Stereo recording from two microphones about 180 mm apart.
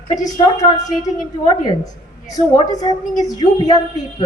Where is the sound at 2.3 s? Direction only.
20° left (ahead or behind).